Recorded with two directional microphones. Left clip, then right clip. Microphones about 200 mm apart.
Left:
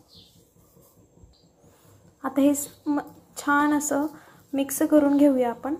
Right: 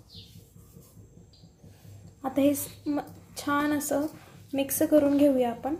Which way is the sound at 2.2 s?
5° left (ahead or behind).